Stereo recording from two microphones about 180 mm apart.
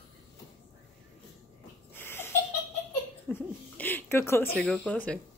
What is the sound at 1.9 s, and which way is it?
Laughter, 10° left (ahead or behind).